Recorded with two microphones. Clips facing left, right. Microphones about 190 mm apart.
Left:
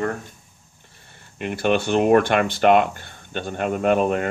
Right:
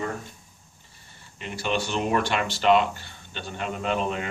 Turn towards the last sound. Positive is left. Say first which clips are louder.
# left 8 dB
turn(degrees=50)  # may be behind; listen again after turning